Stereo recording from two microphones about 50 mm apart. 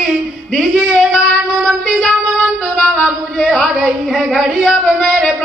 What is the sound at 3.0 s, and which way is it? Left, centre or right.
Speech, centre.